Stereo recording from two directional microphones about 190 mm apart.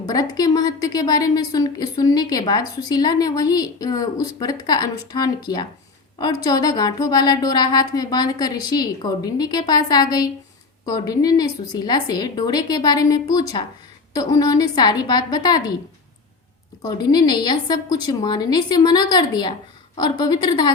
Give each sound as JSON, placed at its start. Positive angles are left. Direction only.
{"t": 0.0, "sound": "a woman's voice", "side_deg": 20}
{"t": 16.8, "sound": "a woman's voice", "side_deg": 20}